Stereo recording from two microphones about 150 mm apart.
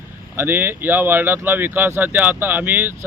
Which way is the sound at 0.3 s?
15° right (ahead or behind).